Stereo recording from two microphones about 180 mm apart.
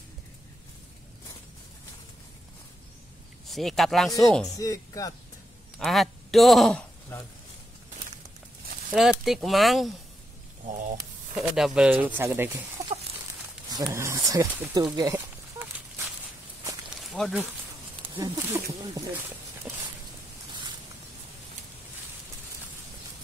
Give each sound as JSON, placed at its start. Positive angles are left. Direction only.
{"t": 3.4, "sound": "speech", "side_deg": 0}
{"t": 4.6, "sound": "speech", "side_deg": 20}
{"t": 5.8, "sound": "a man's voice", "side_deg": 0}
{"t": 9.2, "sound": "speech", "side_deg": 0}
{"t": 10.7, "sound": "speech", "side_deg": -45}
{"t": 11.3, "sound": "speech", "side_deg": 0}
{"t": 13.8, "sound": "speech", "side_deg": -15}
{"t": 17.1, "sound": "speech", "side_deg": 0}
{"t": 18.1, "sound": "speech", "side_deg": -20}